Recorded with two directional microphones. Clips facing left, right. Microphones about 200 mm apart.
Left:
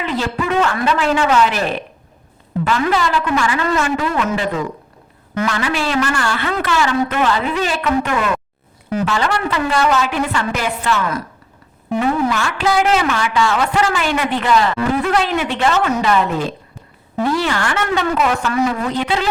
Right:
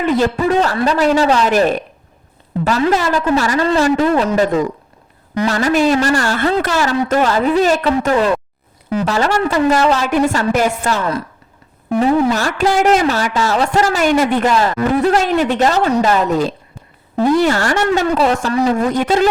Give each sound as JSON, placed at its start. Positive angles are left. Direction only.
{"t": 0.0, "sound": "a woman's voice", "side_deg": -45}
{"t": 0.4, "sound": "a woman's voice", "side_deg": -35}